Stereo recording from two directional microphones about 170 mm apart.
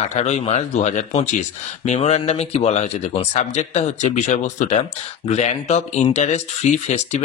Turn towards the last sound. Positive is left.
turn(degrees=40)  # may be behind; listen again after turning